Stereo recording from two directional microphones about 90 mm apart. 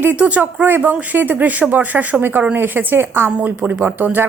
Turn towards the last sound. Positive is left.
turn(degrees=-20)  # may be behind; listen again after turning